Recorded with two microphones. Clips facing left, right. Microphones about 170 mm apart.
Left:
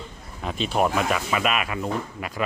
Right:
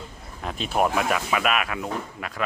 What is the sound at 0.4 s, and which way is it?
Speech, 5° right (ahead or behind).